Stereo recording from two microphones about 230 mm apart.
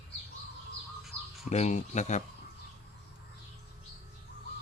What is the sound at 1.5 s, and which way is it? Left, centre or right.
Speech, left.